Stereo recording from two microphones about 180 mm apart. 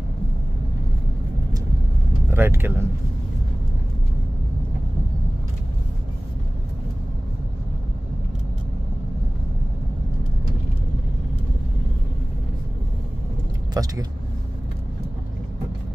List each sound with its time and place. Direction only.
2.3 s speech: 10° right (ahead or behind)
13.8 s speech: 20° right (ahead or behind)